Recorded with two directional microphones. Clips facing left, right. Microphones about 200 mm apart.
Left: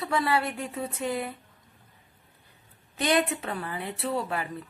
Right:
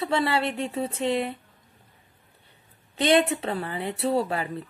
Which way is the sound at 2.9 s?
25° right (ahead or behind).